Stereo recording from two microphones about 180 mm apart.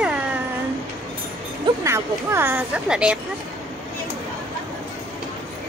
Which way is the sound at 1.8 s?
15° right (ahead or behind).